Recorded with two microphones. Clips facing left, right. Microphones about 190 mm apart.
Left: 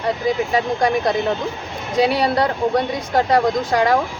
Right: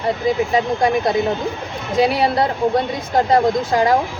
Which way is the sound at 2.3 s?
25° right (ahead or behind).